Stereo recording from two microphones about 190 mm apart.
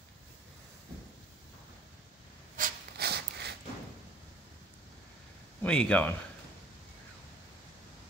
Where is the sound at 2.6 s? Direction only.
60° right (ahead or behind).